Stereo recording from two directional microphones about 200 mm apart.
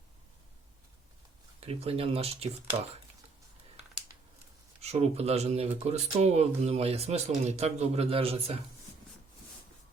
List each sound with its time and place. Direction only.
1.6 s speech: 30° right (ahead or behind)
4.8 s speech: 30° right (ahead or behind)